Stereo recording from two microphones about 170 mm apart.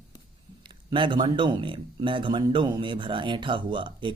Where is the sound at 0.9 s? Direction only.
30° right (ahead or behind).